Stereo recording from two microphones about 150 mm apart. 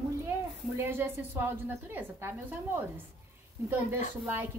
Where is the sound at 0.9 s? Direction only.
15° right (ahead or behind).